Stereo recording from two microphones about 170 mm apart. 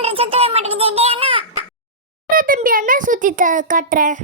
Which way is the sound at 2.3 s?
55° right (ahead or behind).